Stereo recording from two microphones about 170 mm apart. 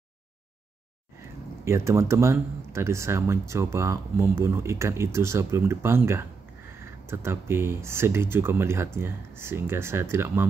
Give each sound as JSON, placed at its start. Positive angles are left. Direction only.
{"t": 1.6, "sound": "speech", "side_deg": -15}